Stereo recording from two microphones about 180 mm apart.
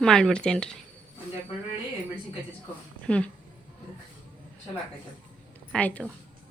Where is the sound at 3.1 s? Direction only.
5° left (ahead or behind).